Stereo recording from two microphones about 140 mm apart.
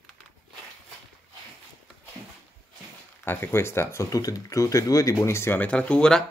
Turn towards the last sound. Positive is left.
turn(degrees=5)  # may be behind; listen again after turning